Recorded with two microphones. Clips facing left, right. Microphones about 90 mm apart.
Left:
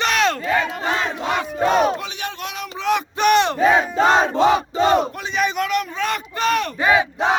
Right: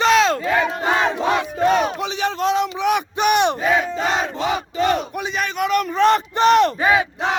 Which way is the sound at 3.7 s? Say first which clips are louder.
Left 4 dB; 40° left (ahead or behind).